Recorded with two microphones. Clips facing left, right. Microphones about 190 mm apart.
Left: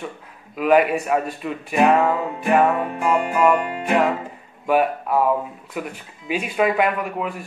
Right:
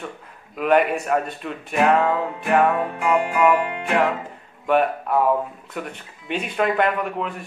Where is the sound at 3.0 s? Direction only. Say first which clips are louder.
Left 1 dB; 35° left (ahead or behind).